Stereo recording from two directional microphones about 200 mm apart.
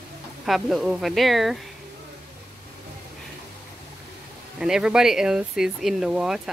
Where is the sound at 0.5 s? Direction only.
Centre (ahead or behind).